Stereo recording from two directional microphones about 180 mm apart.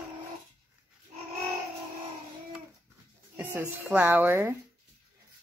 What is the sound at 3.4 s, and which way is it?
A child's voice, 10° right (ahead or behind).